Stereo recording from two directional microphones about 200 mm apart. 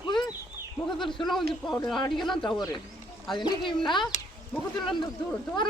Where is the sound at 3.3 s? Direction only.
25° left (ahead or behind).